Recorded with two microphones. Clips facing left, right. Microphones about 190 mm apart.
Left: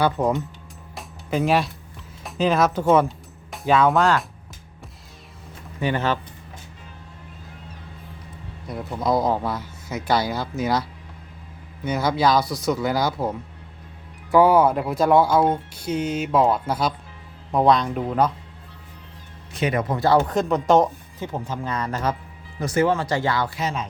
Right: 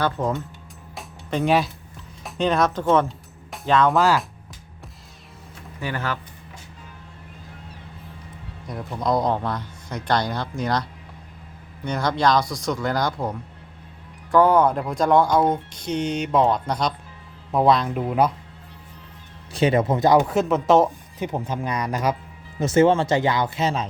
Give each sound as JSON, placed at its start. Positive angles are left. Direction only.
{"t": 0.0, "sound": "speech", "side_deg": 10}
{"t": 0.9, "sound": "music", "side_deg": 0}
{"t": 2.2, "sound": "speech", "side_deg": 5}
{"t": 5.8, "sound": "speech", "side_deg": 20}
{"t": 8.6, "sound": "speech", "side_deg": 0}
{"t": 11.9, "sound": "speech", "side_deg": 5}
{"t": 19.5, "sound": "speech", "side_deg": -30}
{"t": 21.2, "sound": "speech", "side_deg": -15}
{"t": 22.6, "sound": "speech", "side_deg": -25}